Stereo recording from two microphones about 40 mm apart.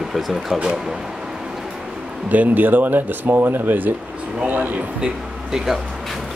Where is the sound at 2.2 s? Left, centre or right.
Right.